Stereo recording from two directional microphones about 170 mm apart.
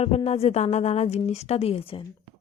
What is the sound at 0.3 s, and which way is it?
A woman's voice, 40° left (ahead or behind).